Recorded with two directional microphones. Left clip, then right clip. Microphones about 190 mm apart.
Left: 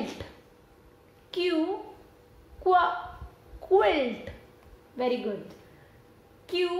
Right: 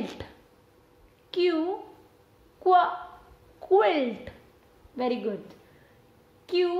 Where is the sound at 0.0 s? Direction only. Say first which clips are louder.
Even; 55° right (ahead or behind).